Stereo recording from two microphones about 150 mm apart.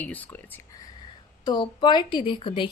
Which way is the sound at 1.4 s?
30° left (ahead or behind).